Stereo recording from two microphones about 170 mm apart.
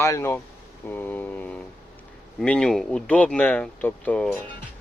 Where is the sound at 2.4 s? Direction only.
5° left (ahead or behind).